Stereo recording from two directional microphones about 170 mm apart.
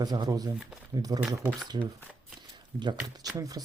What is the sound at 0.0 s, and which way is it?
Speech, 25° right (ahead or behind).